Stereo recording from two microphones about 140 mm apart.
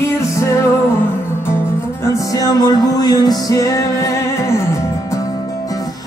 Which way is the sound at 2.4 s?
25° left (ahead or behind).